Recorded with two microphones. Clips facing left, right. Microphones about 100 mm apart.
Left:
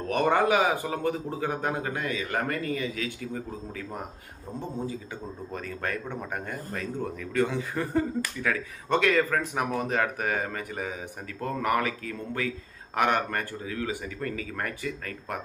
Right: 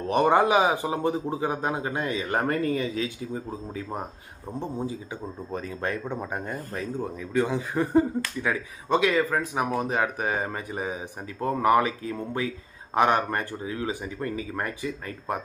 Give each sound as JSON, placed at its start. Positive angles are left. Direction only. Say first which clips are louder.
{"t": 0.1, "sound": "a man's voice", "louder": "right 3 dB", "side_deg": -20}
{"t": 5.5, "sound": "a man's voice", "louder": "right 3 dB", "side_deg": -25}
{"t": 7.0, "sound": "a man's voice", "louder": "right 1 dB", "side_deg": -15}